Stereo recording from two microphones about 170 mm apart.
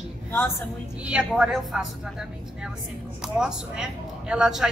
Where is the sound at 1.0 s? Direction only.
5° right (ahead or behind).